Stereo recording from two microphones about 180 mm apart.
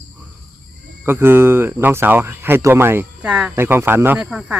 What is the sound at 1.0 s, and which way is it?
Speech, 15° right (ahead or behind).